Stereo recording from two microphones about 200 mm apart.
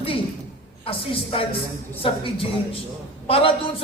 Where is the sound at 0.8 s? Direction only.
25° left (ahead or behind).